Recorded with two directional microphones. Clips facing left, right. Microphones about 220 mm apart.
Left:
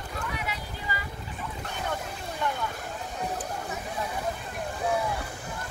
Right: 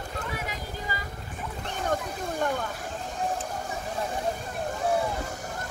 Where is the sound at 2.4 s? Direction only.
45° right (ahead or behind).